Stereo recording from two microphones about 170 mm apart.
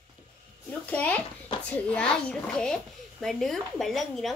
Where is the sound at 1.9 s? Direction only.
5° left (ahead or behind).